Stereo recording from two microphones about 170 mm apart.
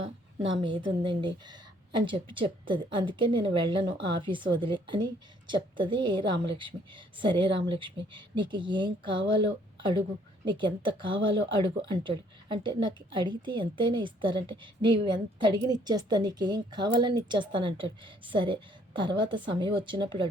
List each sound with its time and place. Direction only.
0.6 s a woman's voice: 30° right (ahead or behind)
10.4 s a woman's voice: 30° right (ahead or behind)